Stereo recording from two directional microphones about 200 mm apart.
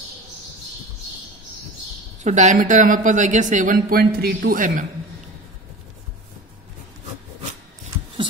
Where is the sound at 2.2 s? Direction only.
35° right (ahead or behind).